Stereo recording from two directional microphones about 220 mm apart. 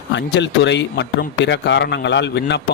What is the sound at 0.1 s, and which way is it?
Speech, 55° left (ahead or behind).